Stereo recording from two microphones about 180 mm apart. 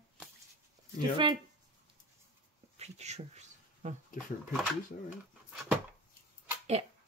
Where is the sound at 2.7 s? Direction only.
35° right (ahead or behind).